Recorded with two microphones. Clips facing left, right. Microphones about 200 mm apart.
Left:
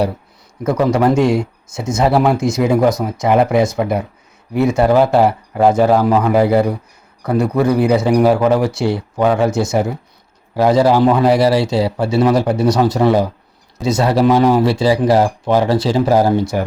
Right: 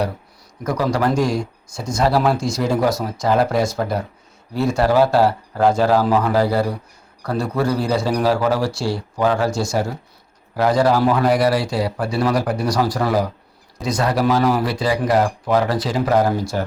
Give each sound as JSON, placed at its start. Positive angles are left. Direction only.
{"t": 0.6, "sound": "speech", "side_deg": 25}